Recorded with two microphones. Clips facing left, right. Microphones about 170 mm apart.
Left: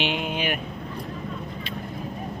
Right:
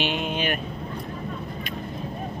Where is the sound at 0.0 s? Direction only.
10° left (ahead or behind).